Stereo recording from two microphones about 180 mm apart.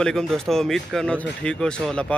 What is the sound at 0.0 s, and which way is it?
Speech, 5° left (ahead or behind).